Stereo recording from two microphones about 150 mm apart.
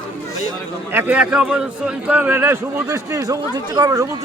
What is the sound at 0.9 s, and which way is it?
A man's voice, 10° right (ahead or behind).